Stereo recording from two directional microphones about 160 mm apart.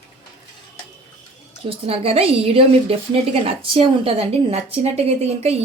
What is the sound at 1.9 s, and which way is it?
A woman's voice, 35° right (ahead or behind).